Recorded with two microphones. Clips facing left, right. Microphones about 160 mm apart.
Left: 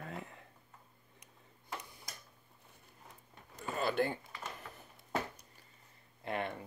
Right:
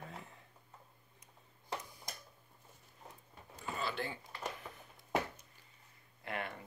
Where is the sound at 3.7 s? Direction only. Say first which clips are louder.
Left 7 dB; 50° left (ahead or behind).